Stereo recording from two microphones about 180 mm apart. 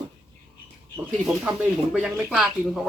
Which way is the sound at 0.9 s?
5° right (ahead or behind).